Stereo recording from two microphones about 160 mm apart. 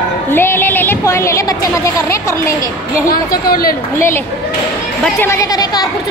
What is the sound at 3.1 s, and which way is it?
Speech, 70° left (ahead or behind).